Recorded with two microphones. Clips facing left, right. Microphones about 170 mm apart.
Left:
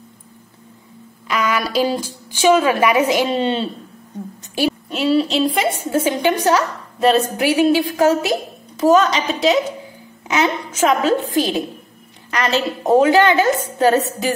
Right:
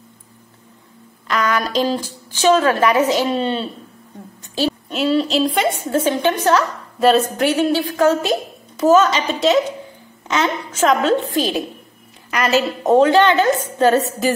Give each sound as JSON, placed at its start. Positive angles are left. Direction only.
{"t": 1.2, "sound": "a woman's voice", "side_deg": 5}
{"t": 3.3, "sound": "a woman's voice", "side_deg": 20}
{"t": 4.6, "sound": "a sound", "side_deg": 10}
{"t": 4.9, "sound": "a woman's voice", "side_deg": 0}
{"t": 7.0, "sound": "a woman's voice", "side_deg": 0}
{"t": 12.9, "sound": "a woman's voice", "side_deg": 10}